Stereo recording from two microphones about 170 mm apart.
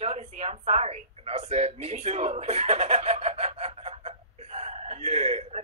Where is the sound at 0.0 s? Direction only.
40° right (ahead or behind).